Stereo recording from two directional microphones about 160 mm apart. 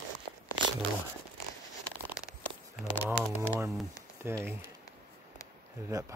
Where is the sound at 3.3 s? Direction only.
15° right (ahead or behind).